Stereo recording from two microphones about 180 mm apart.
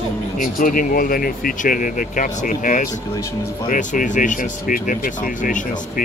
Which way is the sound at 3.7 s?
45° left (ahead or behind).